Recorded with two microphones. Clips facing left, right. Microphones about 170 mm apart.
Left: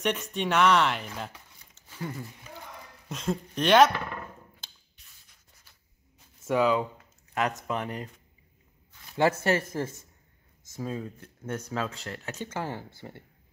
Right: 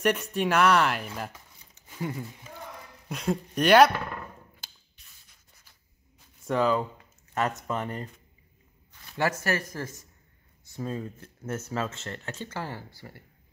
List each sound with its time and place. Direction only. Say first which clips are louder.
0.0 s speech: right 3 dB; 5° right (ahead or behind)
1.9 s a sound: right 3 dB; 15° right (ahead or behind)
3.1 s speech: right 2 dB; 10° right (ahead or behind)
6.4 s speech: left 1 dB; 5° left (ahead or behind)
9.1 s speech: left 4 dB; 25° left (ahead or behind)
10.8 s speech: right 1 dB; centre (ahead or behind)
12.4 s speech: left 2 dB; 15° left (ahead or behind)